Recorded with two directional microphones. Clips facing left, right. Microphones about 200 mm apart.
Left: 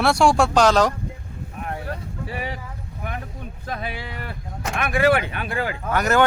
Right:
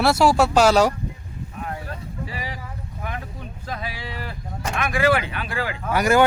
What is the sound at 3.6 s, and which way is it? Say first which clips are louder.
Speech: left 2 dB; 55° left (ahead or behind).